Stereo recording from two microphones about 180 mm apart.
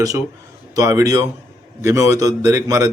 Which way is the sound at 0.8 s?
15° right (ahead or behind).